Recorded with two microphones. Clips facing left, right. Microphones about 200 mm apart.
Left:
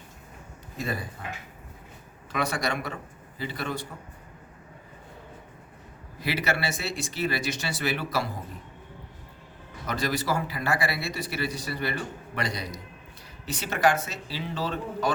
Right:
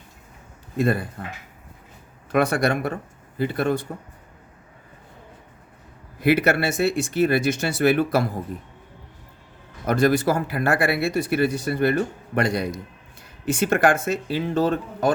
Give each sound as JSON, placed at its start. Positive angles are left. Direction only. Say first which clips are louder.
{"t": 0.8, "sound": "speech", "louder": "right 10 dB", "side_deg": -60}
{"t": 2.3, "sound": "a man's voice", "louder": "right 8 dB", "side_deg": -55}
{"t": 6.1, "sound": "a man's voice", "louder": "right 10 dB", "side_deg": -55}
{"t": 9.8, "sound": "a man's voice", "louder": "right 10 dB", "side_deg": -55}